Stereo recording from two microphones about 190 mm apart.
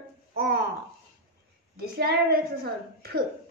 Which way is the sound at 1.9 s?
50° right (ahead or behind).